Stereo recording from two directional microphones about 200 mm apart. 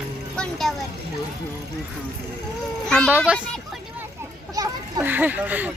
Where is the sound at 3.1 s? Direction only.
10° right (ahead or behind).